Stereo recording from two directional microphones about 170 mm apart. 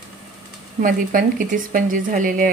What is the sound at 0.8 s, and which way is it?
Speech, 50° right (ahead or behind).